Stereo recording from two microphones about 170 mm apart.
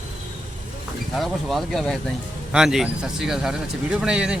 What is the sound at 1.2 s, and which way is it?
Speech, centre (ahead or behind).